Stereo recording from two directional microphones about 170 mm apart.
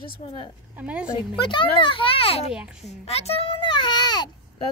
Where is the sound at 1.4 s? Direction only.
30° left (ahead or behind).